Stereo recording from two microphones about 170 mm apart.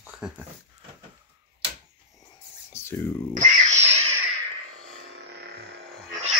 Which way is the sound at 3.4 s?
40° right (ahead or behind).